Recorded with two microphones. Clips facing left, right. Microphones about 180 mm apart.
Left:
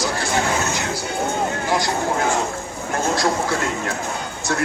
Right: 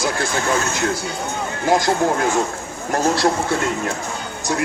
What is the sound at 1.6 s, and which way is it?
Speech, 45° right (ahead or behind).